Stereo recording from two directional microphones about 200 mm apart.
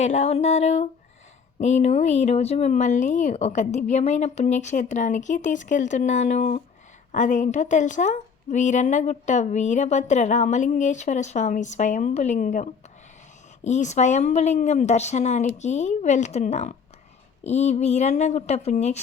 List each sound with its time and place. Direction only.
0.0 s a woman's voice: 35° left (ahead or behind)
13.7 s a woman's voice: 35° left (ahead or behind)